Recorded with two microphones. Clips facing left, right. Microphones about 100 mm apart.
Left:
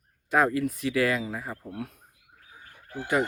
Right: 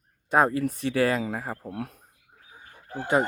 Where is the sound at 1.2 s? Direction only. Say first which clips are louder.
Right 3 dB; 45° right (ahead or behind).